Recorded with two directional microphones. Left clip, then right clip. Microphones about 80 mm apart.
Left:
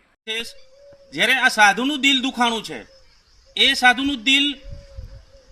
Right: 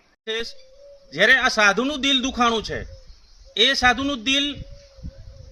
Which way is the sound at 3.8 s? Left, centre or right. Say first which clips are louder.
Left 3 dB; right.